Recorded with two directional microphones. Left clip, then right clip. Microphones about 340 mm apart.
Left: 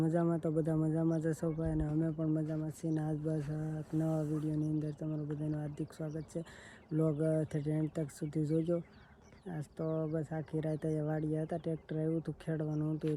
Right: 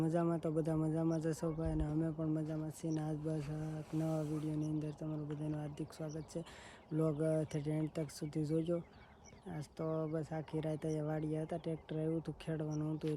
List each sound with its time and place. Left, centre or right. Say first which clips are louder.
0.0 s speech: left 3 dB; centre